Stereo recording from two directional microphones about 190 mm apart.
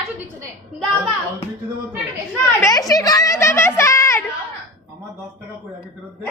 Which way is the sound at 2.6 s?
20° left (ahead or behind).